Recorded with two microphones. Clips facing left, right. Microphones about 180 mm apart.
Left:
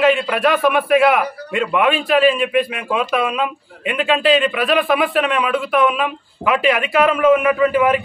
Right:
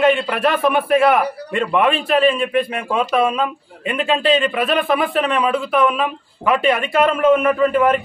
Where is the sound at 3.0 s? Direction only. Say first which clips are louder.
Right 3 dB; 35° right (ahead or behind).